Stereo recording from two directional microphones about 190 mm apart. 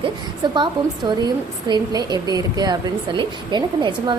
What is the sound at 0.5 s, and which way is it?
A woman's voice, 25° right (ahead or behind).